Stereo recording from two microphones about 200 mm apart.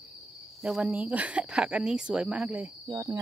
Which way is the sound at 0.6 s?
5° right (ahead or behind).